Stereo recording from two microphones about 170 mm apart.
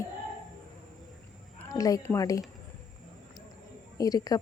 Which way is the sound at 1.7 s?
20° left (ahead or behind).